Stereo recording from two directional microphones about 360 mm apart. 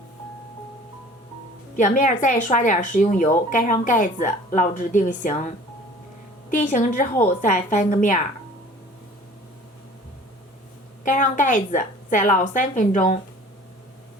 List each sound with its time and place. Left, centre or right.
1.7 s a woman's voice: left
11.0 s a woman's voice: left